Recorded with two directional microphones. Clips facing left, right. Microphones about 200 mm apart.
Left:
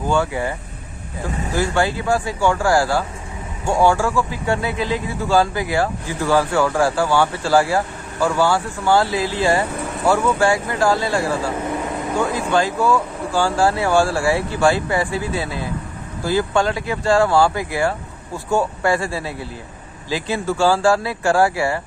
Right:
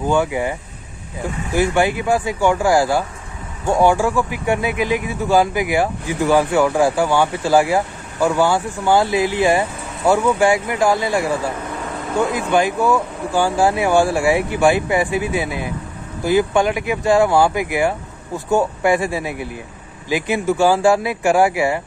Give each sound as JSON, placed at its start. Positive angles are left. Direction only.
{"t": 0.1, "sound": "speech", "side_deg": -15}